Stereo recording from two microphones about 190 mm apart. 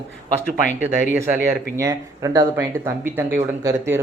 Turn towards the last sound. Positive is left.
turn(degrees=-15)  # may be behind; listen again after turning